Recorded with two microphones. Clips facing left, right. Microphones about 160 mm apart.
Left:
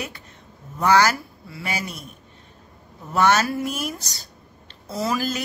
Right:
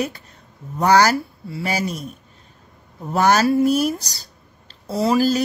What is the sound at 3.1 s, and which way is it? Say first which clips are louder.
Speech: right 4 dB; 35° right (ahead or behind).